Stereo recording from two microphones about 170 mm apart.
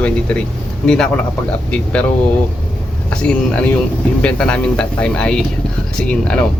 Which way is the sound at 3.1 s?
5° left (ahead or behind).